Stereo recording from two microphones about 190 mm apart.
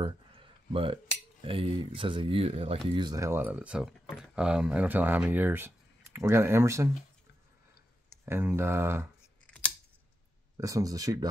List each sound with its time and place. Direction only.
0.0 s a sound: 30° right (ahead or behind)
1.4 s speech: 30° right (ahead or behind)
8.3 s speech: 10° right (ahead or behind)
10.6 s speech: 20° right (ahead or behind)